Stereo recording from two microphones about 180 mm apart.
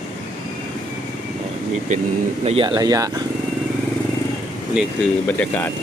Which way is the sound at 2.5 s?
30° right (ahead or behind).